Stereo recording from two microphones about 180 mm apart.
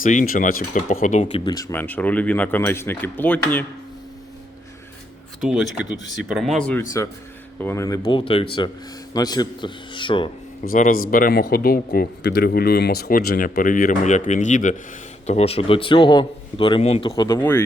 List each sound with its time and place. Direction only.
0.0 s speech: 45° left (ahead or behind)
1.2 s speech: 20° left (ahead or behind)
5.4 s speech: centre (ahead or behind)
7.0 s a man's voice: 15° left (ahead or behind)
10.6 s a man's voice: 50° left (ahead or behind); by 17.3 s 25° left (ahead or behind)
17.3 s speech: 10° left (ahead or behind)